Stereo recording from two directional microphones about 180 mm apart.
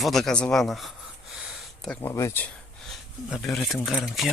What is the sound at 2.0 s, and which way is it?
Speech, 15° left (ahead or behind).